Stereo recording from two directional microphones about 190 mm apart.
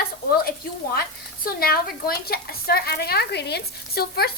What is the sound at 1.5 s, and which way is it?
Speech, 50° left (ahead or behind).